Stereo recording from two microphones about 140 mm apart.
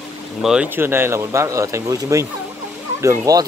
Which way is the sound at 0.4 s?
5° right (ahead or behind).